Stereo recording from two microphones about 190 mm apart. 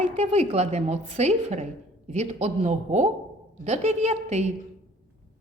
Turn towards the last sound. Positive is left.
turn(degrees=-35)  # may be behind; listen again after turning